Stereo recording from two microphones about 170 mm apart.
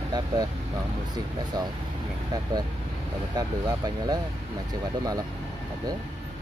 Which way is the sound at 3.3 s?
25° right (ahead or behind).